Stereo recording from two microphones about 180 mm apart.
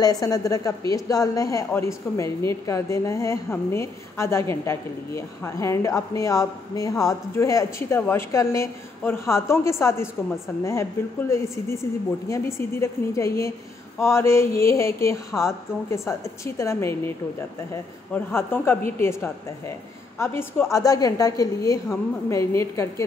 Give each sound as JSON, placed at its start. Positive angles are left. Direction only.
{"t": 0.0, "sound": "a woman's voice", "side_deg": 20}
{"t": 18.1, "sound": "a woman's voice", "side_deg": 10}